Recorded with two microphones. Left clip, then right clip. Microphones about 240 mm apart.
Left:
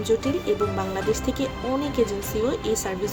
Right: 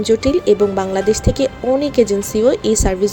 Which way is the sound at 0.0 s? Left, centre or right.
Right.